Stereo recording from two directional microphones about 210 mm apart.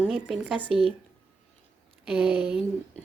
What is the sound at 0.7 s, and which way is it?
Speech, 25° right (ahead or behind).